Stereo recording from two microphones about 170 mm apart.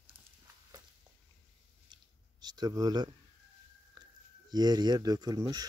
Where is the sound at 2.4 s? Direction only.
25° right (ahead or behind).